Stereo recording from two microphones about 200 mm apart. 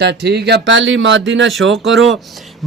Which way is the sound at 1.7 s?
Centre (ahead or behind).